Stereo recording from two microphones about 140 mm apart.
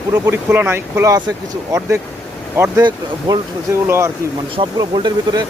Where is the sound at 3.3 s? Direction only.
30° right (ahead or behind).